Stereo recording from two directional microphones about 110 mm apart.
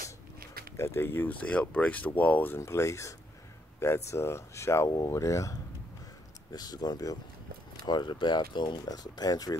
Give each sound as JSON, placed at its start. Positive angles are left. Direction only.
{"t": 0.7, "sound": "speech", "side_deg": 25}